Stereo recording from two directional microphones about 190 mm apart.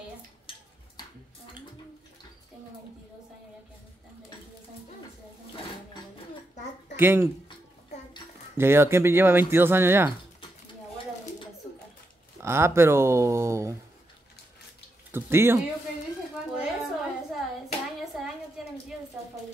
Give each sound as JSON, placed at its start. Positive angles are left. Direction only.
{"t": 0.5, "sound": "a sound", "side_deg": 25}
{"t": 7.0, "sound": "speech", "side_deg": -10}
{"t": 8.5, "sound": "speech", "side_deg": -10}
{"t": 12.4, "sound": "speech", "side_deg": -15}
{"t": 15.0, "sound": "speech", "side_deg": -10}
{"t": 16.5, "sound": "a sound", "side_deg": 0}